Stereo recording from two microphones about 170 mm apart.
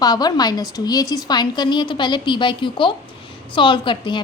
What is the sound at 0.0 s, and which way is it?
A woman's voice, 25° left (ahead or behind).